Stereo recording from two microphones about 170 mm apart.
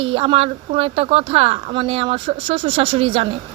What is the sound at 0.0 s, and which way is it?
Speech, 35° right (ahead or behind).